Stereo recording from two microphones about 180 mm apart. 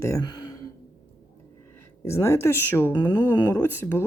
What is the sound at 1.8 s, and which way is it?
A woman's voice, 15° left (ahead or behind).